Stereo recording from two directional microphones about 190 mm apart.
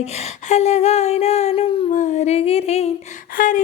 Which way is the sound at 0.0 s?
35° left (ahead or behind).